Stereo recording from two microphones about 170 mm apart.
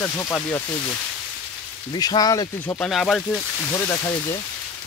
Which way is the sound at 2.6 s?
10° left (ahead or behind).